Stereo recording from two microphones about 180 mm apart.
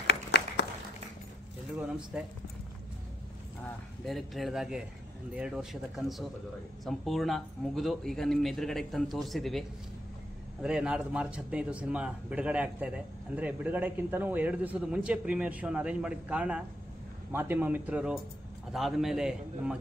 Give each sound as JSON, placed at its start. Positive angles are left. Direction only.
{"t": 0.0, "sound": "applause", "side_deg": 70}
{"t": 1.8, "sound": "speech", "side_deg": -5}
{"t": 3.6, "sound": "a man's voice", "side_deg": 0}